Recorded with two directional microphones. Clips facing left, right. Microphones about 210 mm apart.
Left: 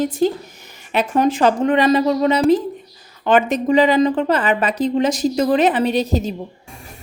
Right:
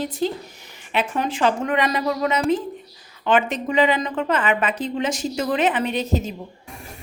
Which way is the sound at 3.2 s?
40° left (ahead or behind).